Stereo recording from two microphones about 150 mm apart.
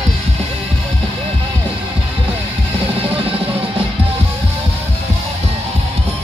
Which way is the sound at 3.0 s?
40° right (ahead or behind).